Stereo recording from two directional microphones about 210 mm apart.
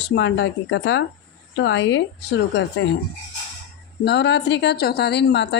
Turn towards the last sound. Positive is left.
turn(degrees=55)  # may be behind; listen again after turning